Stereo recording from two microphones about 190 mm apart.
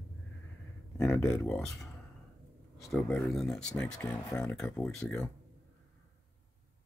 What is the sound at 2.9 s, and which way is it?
Speech, 10° left (ahead or behind).